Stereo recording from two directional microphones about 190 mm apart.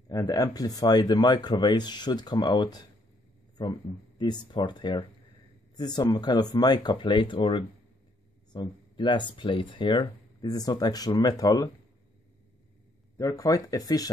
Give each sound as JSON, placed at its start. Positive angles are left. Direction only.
{"t": 0.1, "sound": "speech", "side_deg": 20}
{"t": 4.2, "sound": "speech", "side_deg": 25}
{"t": 13.2, "sound": "speech", "side_deg": 20}